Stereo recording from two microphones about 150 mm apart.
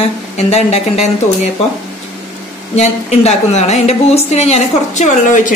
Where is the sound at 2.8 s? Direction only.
45° left (ahead or behind).